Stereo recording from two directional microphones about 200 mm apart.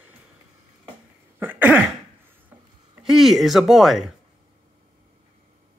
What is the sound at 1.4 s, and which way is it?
Cough, 10° right (ahead or behind).